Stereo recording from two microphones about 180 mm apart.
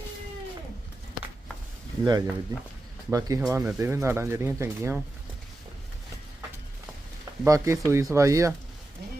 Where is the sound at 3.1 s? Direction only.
20° right (ahead or behind).